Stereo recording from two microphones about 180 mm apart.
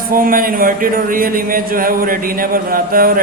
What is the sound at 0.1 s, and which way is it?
A man's voice, 50° right (ahead or behind).